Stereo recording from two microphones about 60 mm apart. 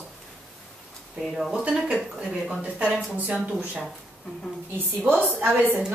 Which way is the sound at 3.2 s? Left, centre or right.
Right.